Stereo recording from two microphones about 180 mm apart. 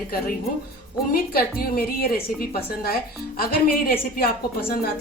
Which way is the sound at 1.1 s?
55° left (ahead or behind).